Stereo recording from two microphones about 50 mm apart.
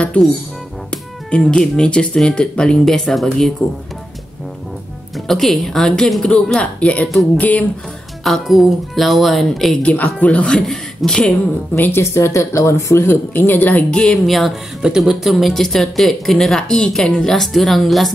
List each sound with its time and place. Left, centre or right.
1.3 s a woman's voice: centre
2.8 s speech: centre
5.1 s speech: centre
6.5 s speech: left
8.2 s speech: centre
10.2 s speech: left
10.5 s a man's voice: centre
11.7 s a woman's voice: left
12.0 s speech: left
13.3 s speech: left
13.9 s speech: centre
14.2 s speech: centre
14.8 s speech: centre
15.3 s a woman's voice: centre